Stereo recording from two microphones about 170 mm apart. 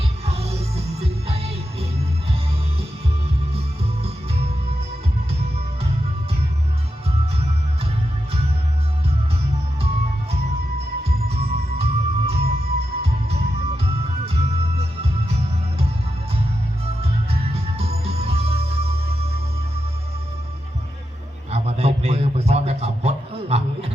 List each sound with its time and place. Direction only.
0.3 s music: 35° right (ahead or behind)
4.0 s music: 35° right (ahead or behind)
11.3 s music: 35° right (ahead or behind)
17.0 s music: 35° right (ahead or behind)
21.5 s a sound: 35° right (ahead or behind)